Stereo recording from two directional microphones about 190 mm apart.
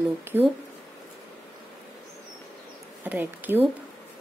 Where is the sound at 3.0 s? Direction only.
10° right (ahead or behind).